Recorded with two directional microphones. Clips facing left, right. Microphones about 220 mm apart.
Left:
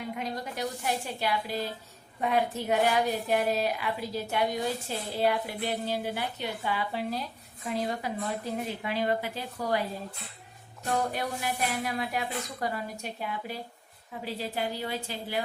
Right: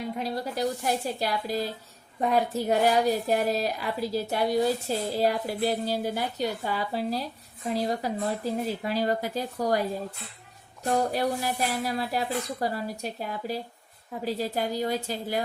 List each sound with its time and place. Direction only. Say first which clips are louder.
0.2 s speech: right 6 dB; 35° right (ahead or behind)
10.8 s speech: right 5 dB; 35° right (ahead or behind)